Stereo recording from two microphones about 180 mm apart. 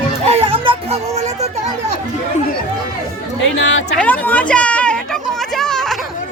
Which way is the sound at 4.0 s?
10° left (ahead or behind).